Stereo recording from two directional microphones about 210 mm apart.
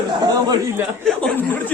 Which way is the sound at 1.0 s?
5° left (ahead or behind).